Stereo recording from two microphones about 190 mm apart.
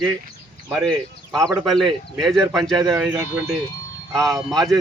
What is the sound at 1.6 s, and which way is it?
Speech, centre (ahead or behind).